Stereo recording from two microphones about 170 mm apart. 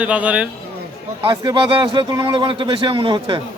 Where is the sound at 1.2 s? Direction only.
25° right (ahead or behind).